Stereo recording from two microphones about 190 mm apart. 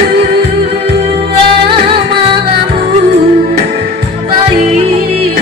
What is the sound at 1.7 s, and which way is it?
Music, 25° right (ahead or behind).